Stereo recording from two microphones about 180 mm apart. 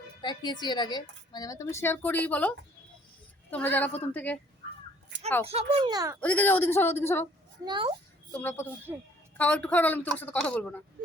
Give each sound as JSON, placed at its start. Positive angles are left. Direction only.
{"t": 0.2, "sound": "a woman's voice", "side_deg": 25}
{"t": 5.5, "sound": "a child's voice", "side_deg": -35}
{"t": 5.9, "sound": "a child's voice", "side_deg": -20}
{"t": 6.1, "sound": "a woman's voice", "side_deg": 10}
{"t": 7.6, "sound": "a child's voice", "side_deg": -25}
{"t": 8.3, "sound": "a woman's voice", "side_deg": 10}